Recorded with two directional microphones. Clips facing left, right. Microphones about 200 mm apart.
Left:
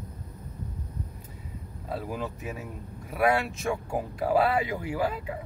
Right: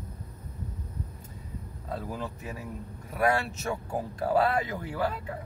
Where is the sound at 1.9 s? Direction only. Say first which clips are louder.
Left 2 dB; 10° left (ahead or behind).